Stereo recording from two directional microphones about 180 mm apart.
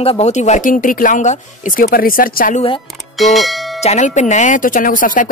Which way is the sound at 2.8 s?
Centre (ahead or behind).